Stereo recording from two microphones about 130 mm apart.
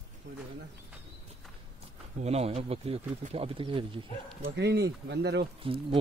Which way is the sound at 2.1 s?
55° right (ahead or behind).